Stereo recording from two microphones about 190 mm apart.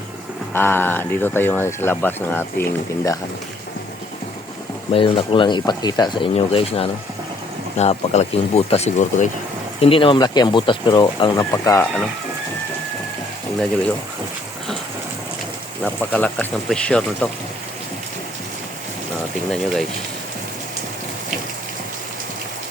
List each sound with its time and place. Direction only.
0.5 s speech: 10° left (ahead or behind)
4.9 s speech: 30° left (ahead or behind)
9.8 s speech: 30° left (ahead or behind)
15.8 s speech: 5° left (ahead or behind)
19.5 s speech: centre (ahead or behind)